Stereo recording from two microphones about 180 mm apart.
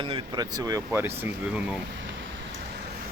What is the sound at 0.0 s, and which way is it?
Speech, 25° right (ahead or behind).